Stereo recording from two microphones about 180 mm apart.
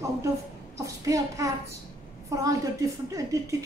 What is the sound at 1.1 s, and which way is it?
Speech, 20° right (ahead or behind).